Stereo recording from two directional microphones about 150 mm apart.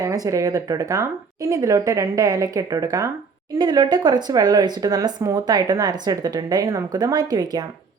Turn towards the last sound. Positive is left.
turn(degrees=-25)  # may be behind; listen again after turning